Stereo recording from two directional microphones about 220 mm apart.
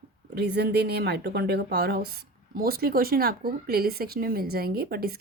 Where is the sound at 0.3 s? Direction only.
50° right (ahead or behind).